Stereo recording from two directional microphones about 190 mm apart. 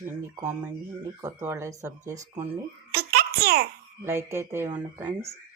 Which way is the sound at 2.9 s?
55° right (ahead or behind).